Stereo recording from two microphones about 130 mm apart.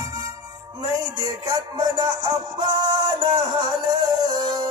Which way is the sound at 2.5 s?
35° right (ahead or behind).